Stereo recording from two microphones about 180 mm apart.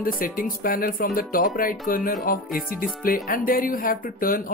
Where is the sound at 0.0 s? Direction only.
50° left (ahead or behind).